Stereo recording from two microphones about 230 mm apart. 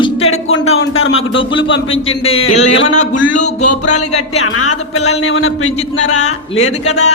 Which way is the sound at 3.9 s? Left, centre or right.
Left.